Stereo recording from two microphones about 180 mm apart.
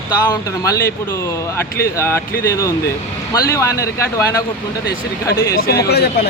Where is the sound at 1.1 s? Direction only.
15° left (ahead or behind).